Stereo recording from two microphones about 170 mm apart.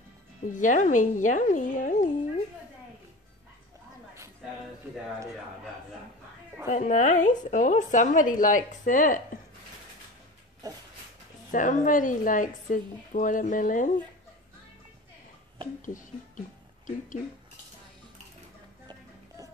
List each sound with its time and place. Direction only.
0.4 s a woman's voice: 50° left (ahead or behind)
6.7 s a woman's voice: 45° left (ahead or behind)
10.6 s a sound: 20° right (ahead or behind)
11.5 s a woman's voice: 50° left (ahead or behind)
15.8 s speech: 50° left (ahead or behind)
18.9 s music: 20° right (ahead or behind)